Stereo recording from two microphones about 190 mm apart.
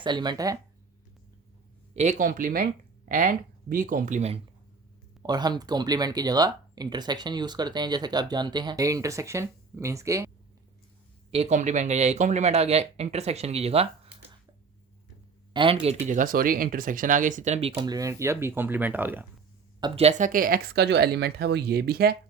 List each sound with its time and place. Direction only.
0.0 s speech: 25° right (ahead or behind)
1.9 s speech: 40° right (ahead or behind)
5.2 s speech: 20° right (ahead or behind)
11.3 s speech: 35° right (ahead or behind)
15.5 s speech: 30° right (ahead or behind); by 19.3 s 10° right (ahead or behind)
19.8 s speech: 35° right (ahead or behind); by 22.1 s 55° right (ahead or behind)